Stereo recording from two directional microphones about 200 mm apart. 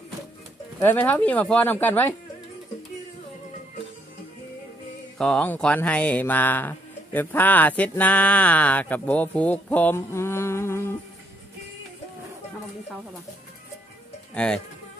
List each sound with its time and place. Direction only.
0.7 s speech: 10° left (ahead or behind)
5.1 s speech: 5° left (ahead or behind)
14.3 s speech: 5° left (ahead or behind)